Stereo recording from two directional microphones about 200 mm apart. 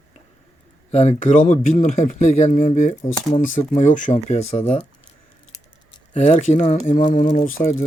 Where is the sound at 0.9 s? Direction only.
35° left (ahead or behind).